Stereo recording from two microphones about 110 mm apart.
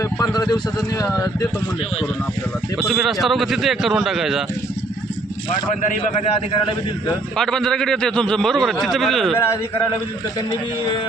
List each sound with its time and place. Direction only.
0.0 s speech: 35° left (ahead or behind)
2.8 s a man's voice: centre (ahead or behind)
7.3 s a man's voice: 5° left (ahead or behind)